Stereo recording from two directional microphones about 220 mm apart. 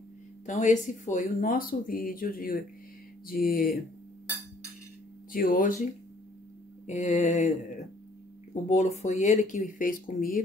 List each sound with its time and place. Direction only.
0.5 s speech: 35° left (ahead or behind)
5.3 s speech: 40° left (ahead or behind)
6.9 s speech: 30° left (ahead or behind)
8.6 s speech: 30° left (ahead or behind)